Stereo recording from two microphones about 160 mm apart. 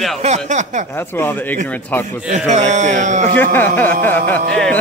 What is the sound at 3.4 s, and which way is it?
Speech, 10° left (ahead or behind).